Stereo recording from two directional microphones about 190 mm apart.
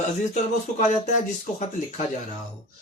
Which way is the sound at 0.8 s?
40° left (ahead or behind).